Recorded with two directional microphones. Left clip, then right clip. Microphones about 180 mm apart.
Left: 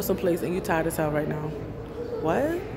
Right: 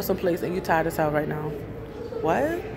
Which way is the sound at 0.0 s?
15° left (ahead or behind).